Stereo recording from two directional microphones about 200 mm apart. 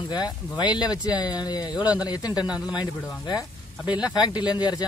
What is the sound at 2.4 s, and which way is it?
Speech, 5° right (ahead or behind).